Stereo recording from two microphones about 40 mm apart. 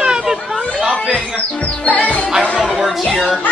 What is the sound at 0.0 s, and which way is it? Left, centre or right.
Chatter, right.